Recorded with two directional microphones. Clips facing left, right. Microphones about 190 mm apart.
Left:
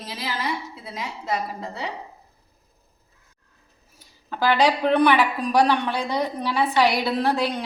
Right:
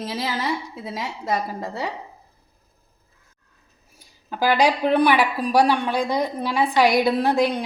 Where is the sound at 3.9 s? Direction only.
10° right (ahead or behind).